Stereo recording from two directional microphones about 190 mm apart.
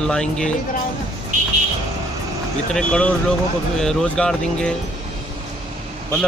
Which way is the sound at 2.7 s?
5° left (ahead or behind).